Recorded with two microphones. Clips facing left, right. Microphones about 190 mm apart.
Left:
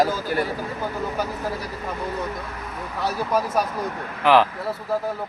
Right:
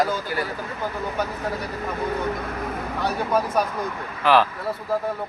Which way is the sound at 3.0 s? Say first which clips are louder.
Even; 5° left (ahead or behind).